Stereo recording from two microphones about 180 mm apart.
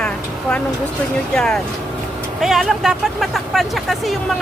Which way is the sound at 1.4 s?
5° left (ahead or behind).